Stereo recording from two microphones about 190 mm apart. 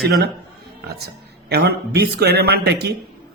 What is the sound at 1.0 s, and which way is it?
Speech, 55° right (ahead or behind).